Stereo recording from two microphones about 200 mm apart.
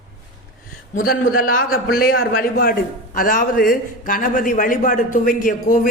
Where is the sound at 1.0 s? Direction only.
45° left (ahead or behind).